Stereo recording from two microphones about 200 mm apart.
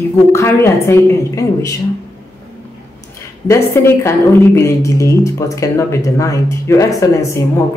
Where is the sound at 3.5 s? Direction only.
15° left (ahead or behind).